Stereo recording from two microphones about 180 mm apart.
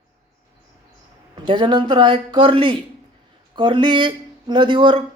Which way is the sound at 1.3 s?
25° right (ahead or behind).